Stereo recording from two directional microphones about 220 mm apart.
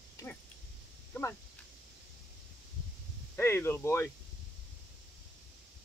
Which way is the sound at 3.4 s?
10° left (ahead or behind).